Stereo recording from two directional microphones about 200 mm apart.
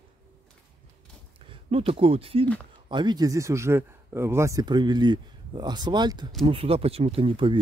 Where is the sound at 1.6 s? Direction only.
30° right (ahead or behind).